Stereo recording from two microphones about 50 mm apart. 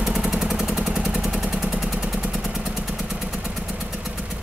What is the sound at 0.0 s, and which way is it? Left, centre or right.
Vehicle, centre.